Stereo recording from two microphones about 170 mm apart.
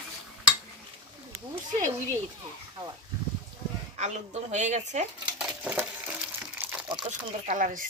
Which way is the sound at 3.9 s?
40° right (ahead or behind).